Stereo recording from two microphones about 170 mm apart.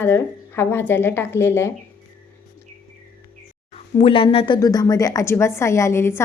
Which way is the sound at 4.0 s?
30° left (ahead or behind).